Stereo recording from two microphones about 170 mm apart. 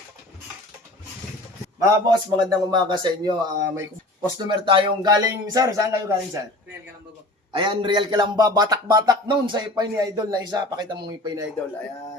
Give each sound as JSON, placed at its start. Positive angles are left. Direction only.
{"t": 1.8, "sound": "speech", "side_deg": -20}
{"t": 7.5, "sound": "speech", "side_deg": -30}